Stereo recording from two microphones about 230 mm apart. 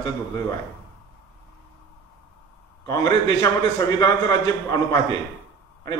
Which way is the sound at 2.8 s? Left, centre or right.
Centre.